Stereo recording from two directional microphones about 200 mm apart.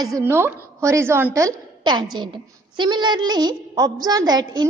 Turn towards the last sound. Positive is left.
turn(degrees=-20)  # may be behind; listen again after turning